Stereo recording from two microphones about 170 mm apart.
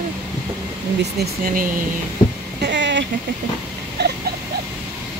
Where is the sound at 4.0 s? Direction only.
80° right.